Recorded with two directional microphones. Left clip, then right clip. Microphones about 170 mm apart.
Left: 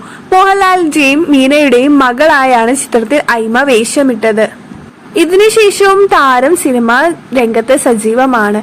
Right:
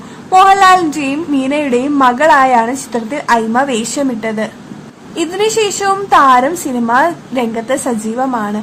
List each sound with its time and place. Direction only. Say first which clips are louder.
0.3 s a woman's voice: right 1 dB; 40° left (ahead or behind)